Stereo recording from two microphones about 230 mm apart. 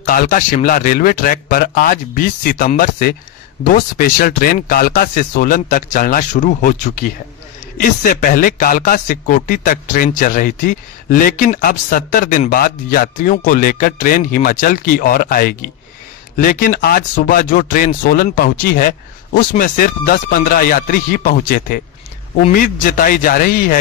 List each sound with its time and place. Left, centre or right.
0.0 s a man's voice: left